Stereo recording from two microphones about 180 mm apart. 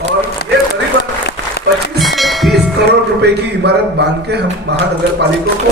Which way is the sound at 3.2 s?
70° right (ahead or behind).